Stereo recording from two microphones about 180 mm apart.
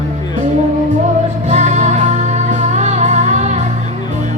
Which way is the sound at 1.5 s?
40° right (ahead or behind).